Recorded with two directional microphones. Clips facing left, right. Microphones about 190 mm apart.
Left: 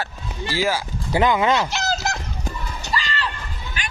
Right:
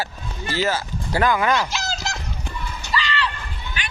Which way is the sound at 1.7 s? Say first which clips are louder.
Left 4 dB; 60° left (ahead or behind).